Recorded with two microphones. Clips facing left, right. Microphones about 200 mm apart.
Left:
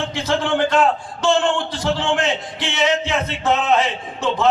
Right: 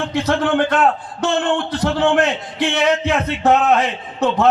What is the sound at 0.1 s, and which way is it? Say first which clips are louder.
A man's voice: right 6 dB; 60° right (ahead or behind).